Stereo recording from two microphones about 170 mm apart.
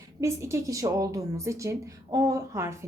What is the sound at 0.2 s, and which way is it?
A woman's voice, 15° right (ahead or behind).